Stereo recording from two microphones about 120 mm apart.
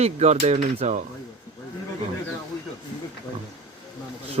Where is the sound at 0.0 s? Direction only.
65° right (ahead or behind).